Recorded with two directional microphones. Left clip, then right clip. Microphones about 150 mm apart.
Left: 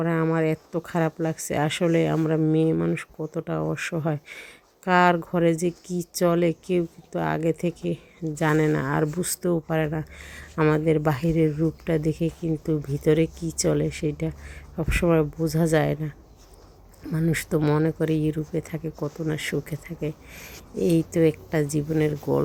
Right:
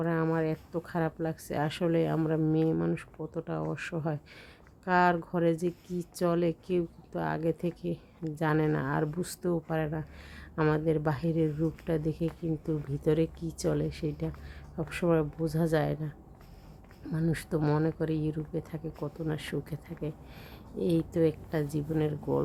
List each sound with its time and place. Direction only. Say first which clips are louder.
0.0 s speech: left 6 dB; 10° left (ahead or behind)
10.6 s speech: left 7 dB; 5° left (ahead or behind)
10.8 s speech: left 7 dB; 20° left (ahead or behind)